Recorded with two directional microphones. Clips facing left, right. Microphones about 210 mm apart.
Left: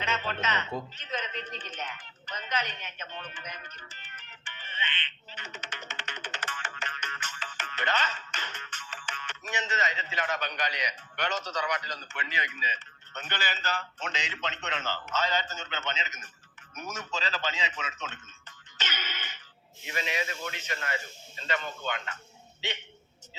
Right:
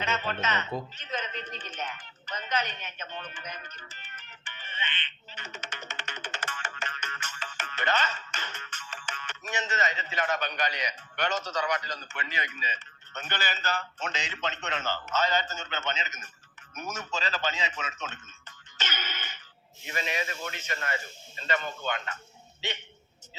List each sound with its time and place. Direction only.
0.0 s music: 50° right (ahead or behind)
0.9 s a sound: 50° right (ahead or behind)
1.8 s a man's voice: 45° right (ahead or behind)